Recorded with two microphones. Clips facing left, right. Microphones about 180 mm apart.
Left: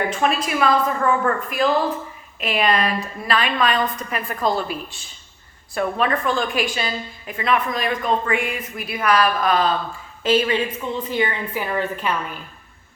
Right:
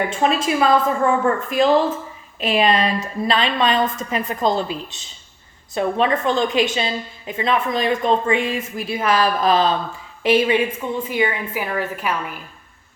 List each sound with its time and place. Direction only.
0.1 s a woman's voice: 25° right (ahead or behind); by 12.4 s centre (ahead or behind)